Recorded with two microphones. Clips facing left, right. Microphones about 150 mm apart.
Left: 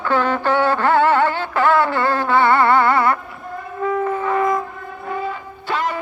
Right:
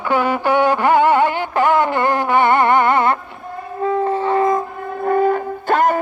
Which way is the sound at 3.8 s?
30° right (ahead or behind).